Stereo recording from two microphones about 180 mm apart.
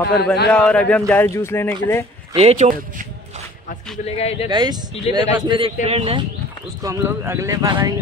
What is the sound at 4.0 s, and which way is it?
Speech, 35° left (ahead or behind).